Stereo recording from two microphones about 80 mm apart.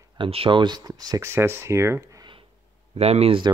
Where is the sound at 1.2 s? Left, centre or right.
Right.